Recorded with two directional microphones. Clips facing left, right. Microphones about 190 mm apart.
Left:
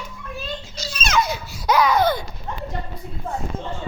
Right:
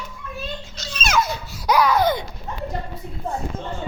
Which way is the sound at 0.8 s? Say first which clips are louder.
Even; 5° left (ahead or behind).